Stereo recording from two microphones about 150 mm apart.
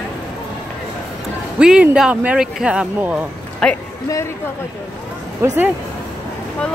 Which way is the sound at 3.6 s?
5° left (ahead or behind).